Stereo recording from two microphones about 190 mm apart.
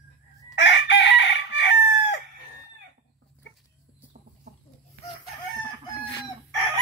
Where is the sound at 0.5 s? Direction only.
70° left (ahead or behind).